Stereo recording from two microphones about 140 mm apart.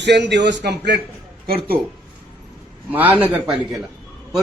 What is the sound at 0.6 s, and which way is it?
Speech, 90° right.